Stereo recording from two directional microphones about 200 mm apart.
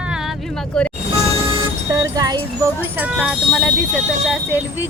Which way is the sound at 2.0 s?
20° right (ahead or behind).